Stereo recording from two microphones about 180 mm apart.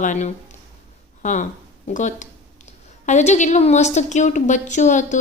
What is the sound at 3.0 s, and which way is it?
A woman's voice, 40° left (ahead or behind).